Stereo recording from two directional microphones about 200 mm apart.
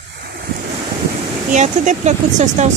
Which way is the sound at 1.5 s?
35° right (ahead or behind).